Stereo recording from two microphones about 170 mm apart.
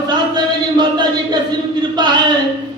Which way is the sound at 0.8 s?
25° right (ahead or behind).